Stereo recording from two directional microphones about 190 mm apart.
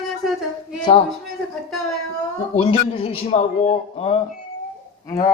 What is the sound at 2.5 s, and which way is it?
A man's voice, 30° left (ahead or behind).